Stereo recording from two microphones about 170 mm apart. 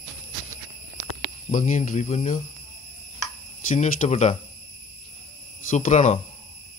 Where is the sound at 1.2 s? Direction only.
45° left (ahead or behind).